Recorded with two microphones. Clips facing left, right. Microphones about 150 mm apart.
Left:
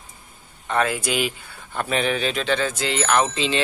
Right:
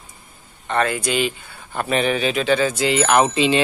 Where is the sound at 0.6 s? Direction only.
5° left (ahead or behind); by 3.6 s 15° right (ahead or behind).